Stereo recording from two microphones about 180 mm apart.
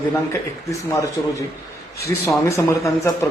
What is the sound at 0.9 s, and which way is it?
Speech, 20° left (ahead or behind).